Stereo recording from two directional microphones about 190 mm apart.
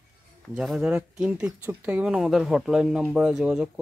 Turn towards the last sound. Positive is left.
turn(degrees=0)  # may be behind; listen again after turning